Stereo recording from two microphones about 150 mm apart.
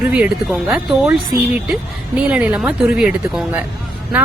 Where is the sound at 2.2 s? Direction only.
10° right (ahead or behind).